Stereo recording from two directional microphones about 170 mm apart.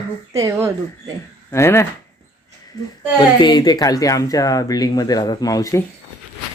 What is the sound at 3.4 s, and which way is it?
Speech, 25° left (ahead or behind).